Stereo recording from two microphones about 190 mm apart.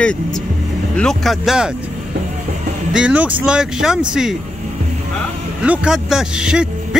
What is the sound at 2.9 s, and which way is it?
Speech, 5° right (ahead or behind).